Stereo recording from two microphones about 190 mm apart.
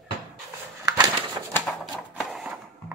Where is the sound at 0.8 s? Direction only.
15° right (ahead or behind).